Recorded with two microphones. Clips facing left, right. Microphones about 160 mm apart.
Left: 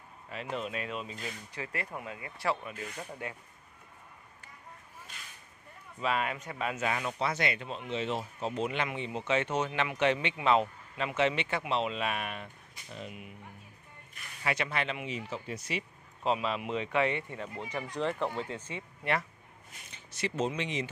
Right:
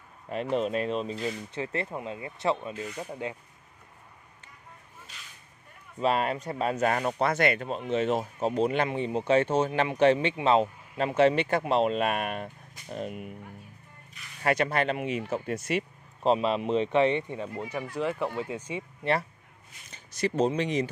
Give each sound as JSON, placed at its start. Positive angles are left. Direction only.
{"t": 0.3, "sound": "speech", "side_deg": -45}
{"t": 5.9, "sound": "speech", "side_deg": -35}
{"t": 14.4, "sound": "speech", "side_deg": -45}
{"t": 16.2, "sound": "speech", "side_deg": -30}
{"t": 19.9, "sound": "speech", "side_deg": -40}